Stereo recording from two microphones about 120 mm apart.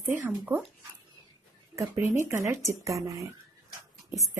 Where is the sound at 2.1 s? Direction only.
25° right (ahead or behind).